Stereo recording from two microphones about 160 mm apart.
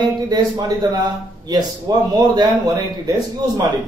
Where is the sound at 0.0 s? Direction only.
25° right (ahead or behind).